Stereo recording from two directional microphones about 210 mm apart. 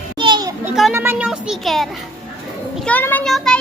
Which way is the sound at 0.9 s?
10° right (ahead or behind).